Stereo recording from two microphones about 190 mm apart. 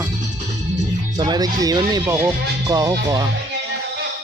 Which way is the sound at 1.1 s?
20° right (ahead or behind).